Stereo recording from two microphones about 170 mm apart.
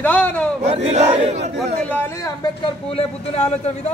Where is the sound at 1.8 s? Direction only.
10° left (ahead or behind).